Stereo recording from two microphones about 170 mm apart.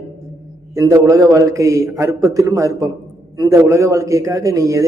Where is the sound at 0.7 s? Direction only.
20° right (ahead or behind).